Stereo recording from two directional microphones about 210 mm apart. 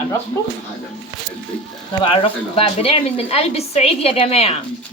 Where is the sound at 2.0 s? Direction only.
25° left (ahead or behind).